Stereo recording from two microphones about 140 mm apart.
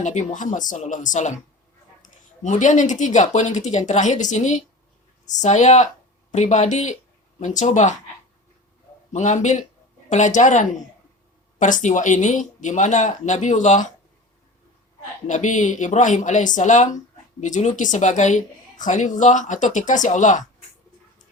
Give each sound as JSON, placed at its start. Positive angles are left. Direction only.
{"t": 0.0, "sound": "a woman's voice", "side_deg": 55}
{"t": 9.1, "sound": "a woman's voice", "side_deg": 55}
{"t": 15.3, "sound": "a woman's voice", "side_deg": 60}